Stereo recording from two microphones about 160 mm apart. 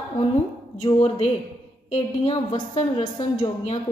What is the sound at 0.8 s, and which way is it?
A woman's voice, 35° left (ahead or behind).